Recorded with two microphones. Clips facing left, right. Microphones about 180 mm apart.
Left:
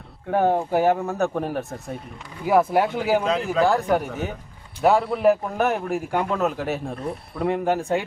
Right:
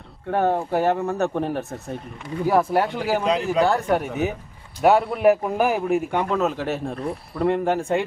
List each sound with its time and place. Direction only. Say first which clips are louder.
0.3 s a man's voice: left 1 dB; 10° left (ahead or behind)
3.2 s a man's voice: right 1 dB; 15° right (ahead or behind)
3.7 s a man's voice: even; centre (ahead or behind)